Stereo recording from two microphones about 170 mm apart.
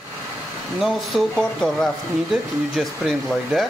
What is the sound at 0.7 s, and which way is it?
Speech, centre (ahead or behind).